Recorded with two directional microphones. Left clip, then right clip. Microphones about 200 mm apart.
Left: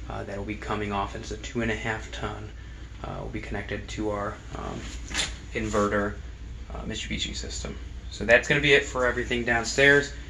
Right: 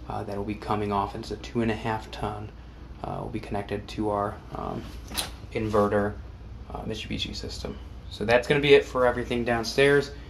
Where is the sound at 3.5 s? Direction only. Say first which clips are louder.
Right 3 dB; 30° right (ahead or behind).